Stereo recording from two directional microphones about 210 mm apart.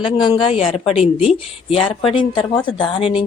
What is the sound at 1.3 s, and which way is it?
Speech, 25° left (ahead or behind).